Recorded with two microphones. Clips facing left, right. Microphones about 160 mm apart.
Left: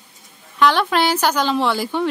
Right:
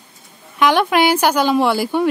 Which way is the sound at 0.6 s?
10° right (ahead or behind).